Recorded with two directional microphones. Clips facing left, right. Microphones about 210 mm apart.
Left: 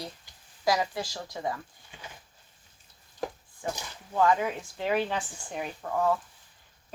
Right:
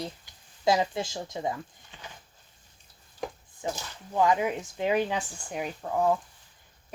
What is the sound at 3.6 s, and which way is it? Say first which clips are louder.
Speech: right 1 dB; 20° right (ahead or behind).